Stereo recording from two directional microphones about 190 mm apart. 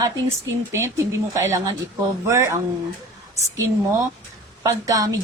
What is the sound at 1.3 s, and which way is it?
Speech, 15° right (ahead or behind).